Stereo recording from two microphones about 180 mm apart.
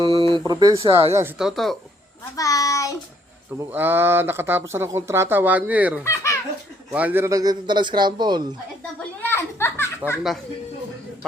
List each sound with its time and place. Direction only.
0.0 s a sound: 25° right (ahead or behind)
0.9 s speech: 30° right (ahead or behind)
1.4 s speech: centre (ahead or behind)
2.3 s child singing: 20° left (ahead or behind)
3.6 s speech: 10° right (ahead or behind)
6.0 s belly laugh: 15° left (ahead or behind)
6.9 s a man's voice: 10° right (ahead or behind)
9.2 s a sound: 15° left (ahead or behind)